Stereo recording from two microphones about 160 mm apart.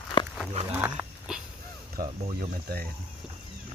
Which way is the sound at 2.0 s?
65° right (ahead or behind).